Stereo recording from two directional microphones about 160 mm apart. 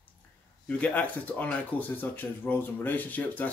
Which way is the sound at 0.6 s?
10° left (ahead or behind).